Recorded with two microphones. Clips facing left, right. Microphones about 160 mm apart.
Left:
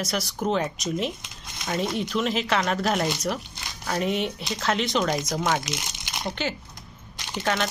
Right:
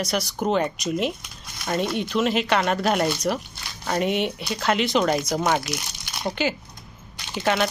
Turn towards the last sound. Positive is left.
turn(degrees=-5)  # may be behind; listen again after turning